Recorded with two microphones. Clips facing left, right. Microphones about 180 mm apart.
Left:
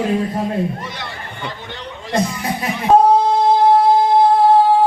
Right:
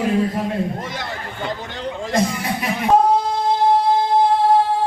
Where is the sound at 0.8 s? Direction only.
45° right (ahead or behind).